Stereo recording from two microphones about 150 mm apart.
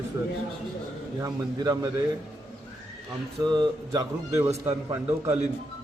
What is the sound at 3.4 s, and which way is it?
Speech, 30° right (ahead or behind).